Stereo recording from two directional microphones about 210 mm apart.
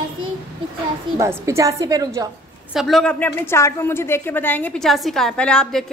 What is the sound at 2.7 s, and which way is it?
A woman's voice, centre (ahead or behind).